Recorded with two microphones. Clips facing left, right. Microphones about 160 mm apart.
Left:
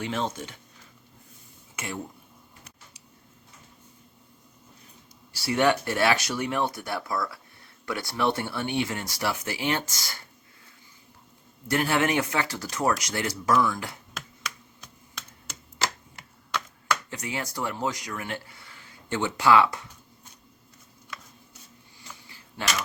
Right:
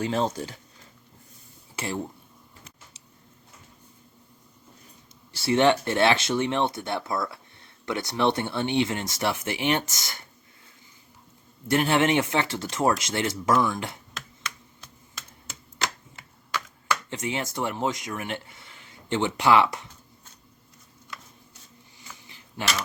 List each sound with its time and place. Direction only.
0.0 s speech: 35° right (ahead or behind)
1.7 s speech: 30° right (ahead or behind)
5.3 s speech: 25° right (ahead or behind)
11.7 s speech: 25° right (ahead or behind)
17.1 s speech: 25° right (ahead or behind)
22.3 s a sound: 20° right (ahead or behind)